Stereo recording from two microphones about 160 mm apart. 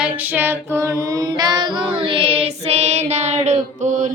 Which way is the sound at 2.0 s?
35° right (ahead or behind).